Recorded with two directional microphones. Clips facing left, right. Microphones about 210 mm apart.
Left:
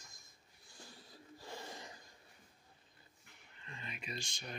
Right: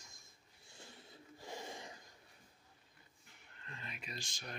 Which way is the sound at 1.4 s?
15° right (ahead or behind).